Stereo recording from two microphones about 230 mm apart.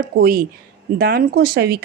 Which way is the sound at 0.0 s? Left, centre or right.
Right.